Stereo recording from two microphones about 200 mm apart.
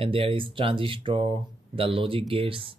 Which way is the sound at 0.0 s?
25° right (ahead or behind).